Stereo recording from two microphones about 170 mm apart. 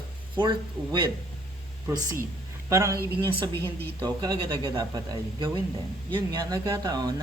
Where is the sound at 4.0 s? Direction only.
25° right (ahead or behind).